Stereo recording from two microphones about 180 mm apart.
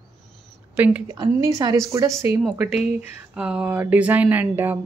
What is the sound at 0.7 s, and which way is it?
Speech, 10° right (ahead or behind).